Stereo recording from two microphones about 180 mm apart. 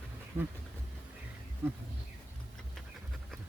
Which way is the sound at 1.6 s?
10° right (ahead or behind).